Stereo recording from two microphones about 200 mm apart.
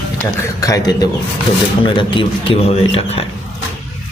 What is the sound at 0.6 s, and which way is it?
A man's voice, 15° left (ahead or behind).